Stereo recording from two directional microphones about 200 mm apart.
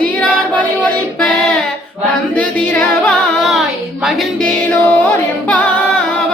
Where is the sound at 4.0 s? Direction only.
Centre (ahead or behind).